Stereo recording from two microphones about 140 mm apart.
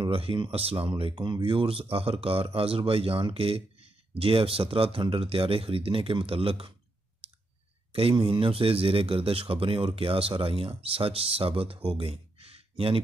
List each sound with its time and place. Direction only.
0.0 s speech: 40° right (ahead or behind)
7.9 s speech: 40° right (ahead or behind)